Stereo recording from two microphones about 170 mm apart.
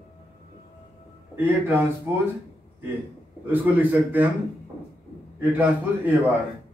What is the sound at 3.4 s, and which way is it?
Speech, 10° right (ahead or behind).